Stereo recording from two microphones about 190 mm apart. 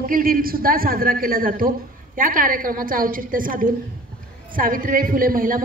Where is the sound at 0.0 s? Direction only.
50° right (ahead or behind).